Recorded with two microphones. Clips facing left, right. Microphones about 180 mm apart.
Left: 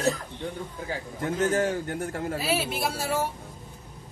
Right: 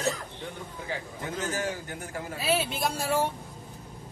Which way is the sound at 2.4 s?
5° left (ahead or behind).